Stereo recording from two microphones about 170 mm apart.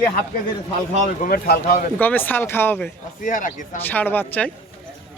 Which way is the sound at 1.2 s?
60° left (ahead or behind).